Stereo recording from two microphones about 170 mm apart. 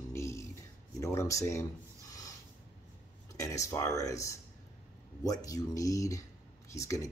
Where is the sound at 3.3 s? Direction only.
20° left (ahead or behind).